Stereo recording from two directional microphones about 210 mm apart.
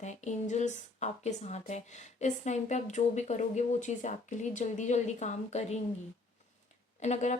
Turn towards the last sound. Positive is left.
turn(degrees=35)  # may be behind; listen again after turning